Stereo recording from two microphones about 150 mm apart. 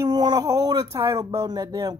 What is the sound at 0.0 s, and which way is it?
Speech, 30° right (ahead or behind).